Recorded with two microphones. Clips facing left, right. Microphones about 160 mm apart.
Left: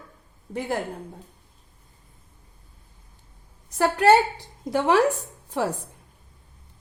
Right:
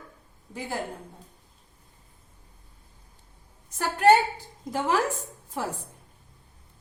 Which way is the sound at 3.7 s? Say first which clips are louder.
Left 2 dB; 70° left (ahead or behind).